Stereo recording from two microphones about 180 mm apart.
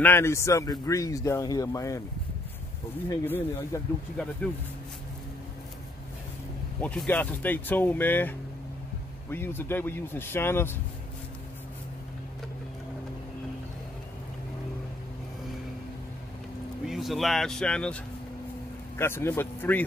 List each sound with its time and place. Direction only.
0.0 s a man's voice: 15° left (ahead or behind)
3.3 s a man's voice: 10° left (ahead or behind)
6.8 s a man's voice: 5° left (ahead or behind)
16.8 s a man's voice: centre (ahead or behind)